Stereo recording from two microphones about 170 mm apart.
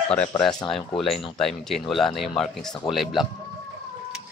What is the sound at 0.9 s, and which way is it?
Speech, centre (ahead or behind).